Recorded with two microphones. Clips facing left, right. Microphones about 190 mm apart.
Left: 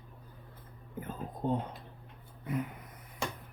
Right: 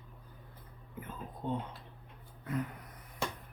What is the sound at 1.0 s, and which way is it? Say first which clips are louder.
Speech: left 5 dB; 40° left (ahead or behind).